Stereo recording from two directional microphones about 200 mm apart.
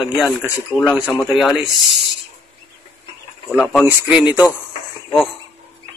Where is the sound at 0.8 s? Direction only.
5° right (ahead or behind).